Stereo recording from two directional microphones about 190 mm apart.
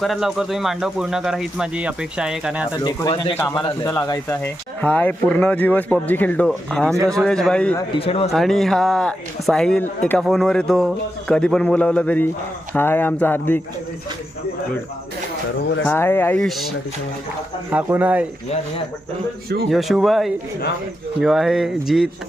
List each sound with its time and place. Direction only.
0.0 s speech: centre (ahead or behind)
2.7 s speech: 20° left (ahead or behind)
4.8 s speech: 10° left (ahead or behind)
7.9 s speech: 30° left (ahead or behind)
8.3 s speech: centre (ahead or behind)
15.9 s speech: 10° left (ahead or behind); by 18.3 s 10° right (ahead or behind)
19.7 s speech: centre (ahead or behind)